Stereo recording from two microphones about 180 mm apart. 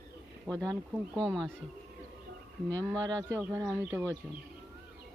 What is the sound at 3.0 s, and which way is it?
Speech, 20° right (ahead or behind).